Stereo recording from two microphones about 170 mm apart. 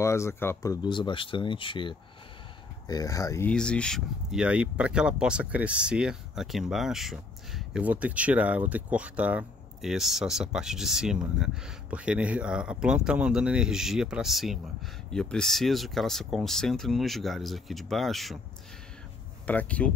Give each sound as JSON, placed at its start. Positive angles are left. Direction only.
{"t": 0.0, "sound": "speech", "side_deg": 15}
{"t": 3.4, "sound": "speech", "side_deg": 5}
{"t": 19.4, "sound": "speech", "side_deg": 10}